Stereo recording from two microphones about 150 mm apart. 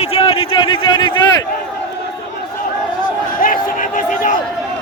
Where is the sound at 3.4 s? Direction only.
65° left (ahead or behind).